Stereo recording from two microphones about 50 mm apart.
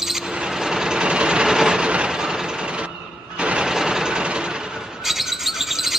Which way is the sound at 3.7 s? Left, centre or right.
Centre.